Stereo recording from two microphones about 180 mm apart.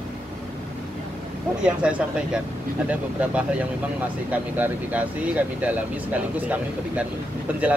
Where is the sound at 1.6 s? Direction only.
5° right (ahead or behind).